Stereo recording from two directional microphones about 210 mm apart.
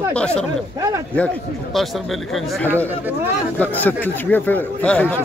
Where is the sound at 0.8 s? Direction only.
15° right (ahead or behind).